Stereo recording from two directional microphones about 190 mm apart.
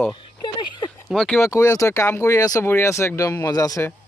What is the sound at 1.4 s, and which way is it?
Speech, 15° left (ahead or behind).